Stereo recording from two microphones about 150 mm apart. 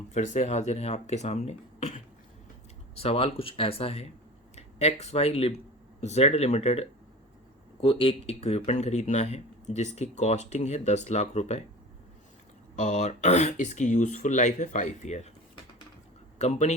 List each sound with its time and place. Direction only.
0.1 s speech: 50° left (ahead or behind)
12.7 s speech: 50° left (ahead or behind)
16.4 s speech: 45° left (ahead or behind)